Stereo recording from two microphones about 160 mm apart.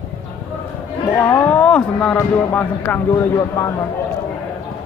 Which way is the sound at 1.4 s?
10° left (ahead or behind).